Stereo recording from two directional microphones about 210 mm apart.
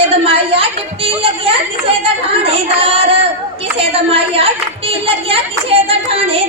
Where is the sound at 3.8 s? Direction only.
25° right (ahead or behind).